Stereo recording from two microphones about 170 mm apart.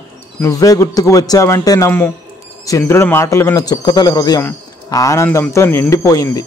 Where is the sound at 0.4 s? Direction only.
20° left (ahead or behind).